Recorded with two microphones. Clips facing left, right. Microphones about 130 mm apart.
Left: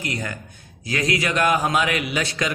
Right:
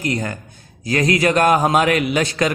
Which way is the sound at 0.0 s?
40° right (ahead or behind).